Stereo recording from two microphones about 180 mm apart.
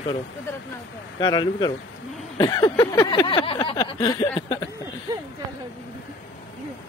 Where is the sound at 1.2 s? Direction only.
25° left (ahead or behind).